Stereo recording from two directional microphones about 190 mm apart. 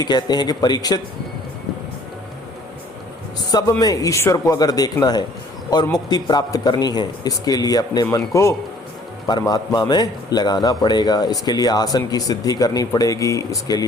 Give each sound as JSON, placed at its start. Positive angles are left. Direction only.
{"t": 0.0, "sound": "a man's voice", "side_deg": 20}
{"t": 3.5, "sound": "a man's voice", "side_deg": 20}